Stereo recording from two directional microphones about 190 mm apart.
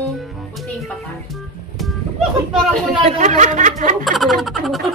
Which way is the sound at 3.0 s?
40° right (ahead or behind).